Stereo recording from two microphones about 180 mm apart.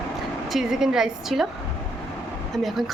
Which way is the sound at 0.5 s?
5° right (ahead or behind).